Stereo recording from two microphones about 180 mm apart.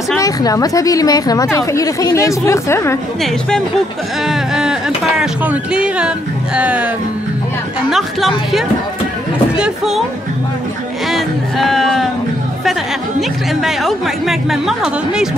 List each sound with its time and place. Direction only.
0.2 s a woman's voice: 20° left (ahead or behind)
4.3 s speech: 5° right (ahead or behind)
7.9 s speech: centre (ahead or behind)
11.1 s speech: centre (ahead or behind)
13.6 s speech: centre (ahead or behind)